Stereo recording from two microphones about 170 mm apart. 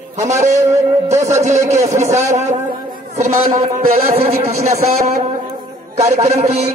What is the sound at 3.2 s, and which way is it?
A man's voice, 45° right (ahead or behind).